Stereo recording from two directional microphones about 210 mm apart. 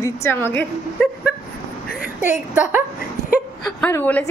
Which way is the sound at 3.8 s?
10° left (ahead or behind).